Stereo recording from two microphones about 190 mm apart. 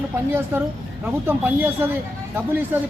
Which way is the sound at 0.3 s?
10° right (ahead or behind).